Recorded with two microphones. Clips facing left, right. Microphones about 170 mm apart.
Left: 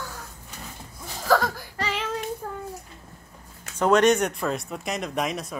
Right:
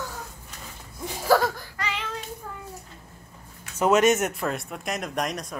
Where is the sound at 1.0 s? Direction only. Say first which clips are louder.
Right 1 dB; 10° right (ahead or behind).